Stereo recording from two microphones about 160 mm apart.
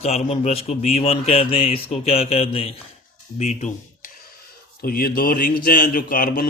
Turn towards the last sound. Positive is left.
turn(degrees=70)  # may be behind; listen again after turning